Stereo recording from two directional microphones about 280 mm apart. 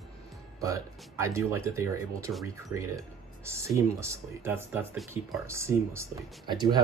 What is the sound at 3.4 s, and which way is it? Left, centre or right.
Speech, centre.